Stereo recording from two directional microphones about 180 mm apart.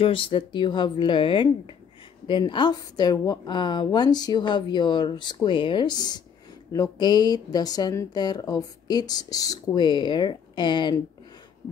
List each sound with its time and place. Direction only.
0.0 s a woman's voice: 30° left (ahead or behind)